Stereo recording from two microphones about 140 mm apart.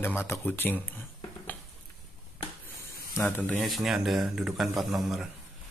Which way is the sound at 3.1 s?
15° left (ahead or behind).